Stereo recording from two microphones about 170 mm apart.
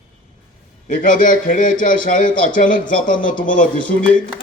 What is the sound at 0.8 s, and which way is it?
Speech, 50° left (ahead or behind).